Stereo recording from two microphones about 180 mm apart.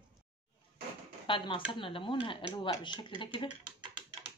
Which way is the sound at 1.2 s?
25° left (ahead or behind).